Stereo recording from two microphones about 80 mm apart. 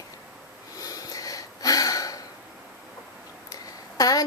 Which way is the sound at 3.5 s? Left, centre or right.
Left.